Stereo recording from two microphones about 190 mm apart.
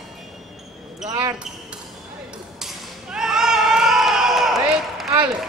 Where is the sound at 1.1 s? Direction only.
20° right (ahead or behind).